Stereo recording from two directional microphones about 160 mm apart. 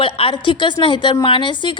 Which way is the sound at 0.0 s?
35° left (ahead or behind).